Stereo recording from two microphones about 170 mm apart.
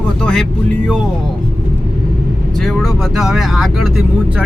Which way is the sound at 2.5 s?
Centre (ahead or behind).